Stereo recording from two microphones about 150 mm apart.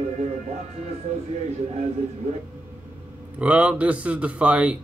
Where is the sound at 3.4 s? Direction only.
10° right (ahead or behind).